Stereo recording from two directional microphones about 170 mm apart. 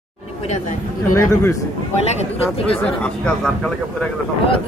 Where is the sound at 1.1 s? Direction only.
15° left (ahead or behind).